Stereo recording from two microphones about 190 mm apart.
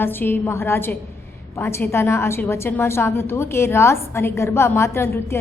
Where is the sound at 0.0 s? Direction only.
10° left (ahead or behind).